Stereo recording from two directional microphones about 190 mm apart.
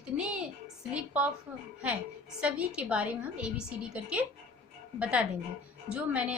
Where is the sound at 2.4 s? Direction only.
5° right (ahead or behind).